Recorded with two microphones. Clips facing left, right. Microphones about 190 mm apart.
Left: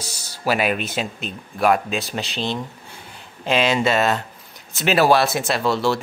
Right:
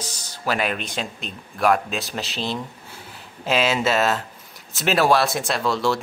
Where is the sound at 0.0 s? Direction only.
10° left (ahead or behind).